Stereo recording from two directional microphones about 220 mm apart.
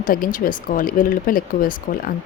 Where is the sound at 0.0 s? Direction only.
40° left (ahead or behind).